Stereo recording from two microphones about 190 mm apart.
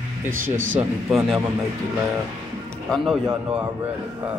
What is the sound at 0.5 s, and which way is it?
Speech, 90° right.